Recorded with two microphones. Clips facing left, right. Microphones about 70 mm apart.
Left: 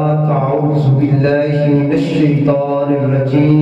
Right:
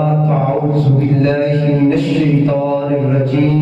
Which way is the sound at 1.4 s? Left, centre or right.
Centre.